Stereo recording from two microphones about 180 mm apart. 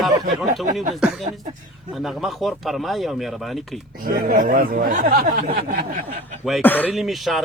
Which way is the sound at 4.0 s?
50° right (ahead or behind).